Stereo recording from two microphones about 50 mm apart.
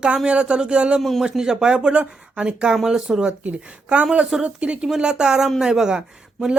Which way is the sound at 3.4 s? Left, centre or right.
Right.